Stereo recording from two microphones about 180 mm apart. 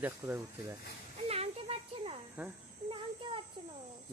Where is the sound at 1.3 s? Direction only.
35° right (ahead or behind).